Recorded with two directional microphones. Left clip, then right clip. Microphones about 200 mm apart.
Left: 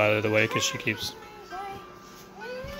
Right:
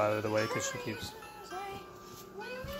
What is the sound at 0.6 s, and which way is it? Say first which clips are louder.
Speech: left 9 dB; 35° left (ahead or behind).